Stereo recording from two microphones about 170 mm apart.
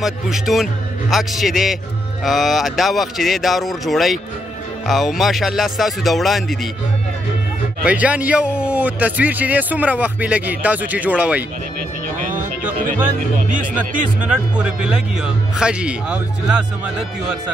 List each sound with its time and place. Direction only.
0.0 s speech: centre (ahead or behind)
7.8 s a man's voice: 10° right (ahead or behind)
14.6 s speech: 5° right (ahead or behind)